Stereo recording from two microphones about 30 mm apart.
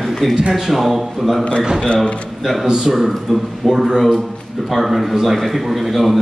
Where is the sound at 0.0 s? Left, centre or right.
Centre.